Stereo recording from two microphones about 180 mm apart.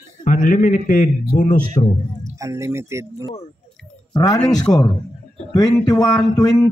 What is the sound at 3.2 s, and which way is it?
Speech, 35° left (ahead or behind).